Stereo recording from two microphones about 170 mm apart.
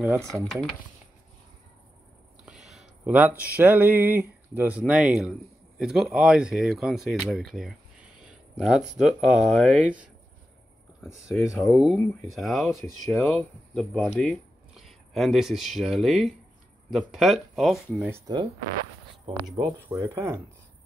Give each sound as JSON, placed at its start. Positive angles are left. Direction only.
{"t": 0.0, "sound": "speech", "side_deg": -15}
{"t": 0.3, "sound": "speech", "side_deg": 5}
{"t": 2.4, "sound": "a sound", "side_deg": 0}
{"t": 3.5, "sound": "speech", "side_deg": -10}
{"t": 18.1, "sound": "speech", "side_deg": -25}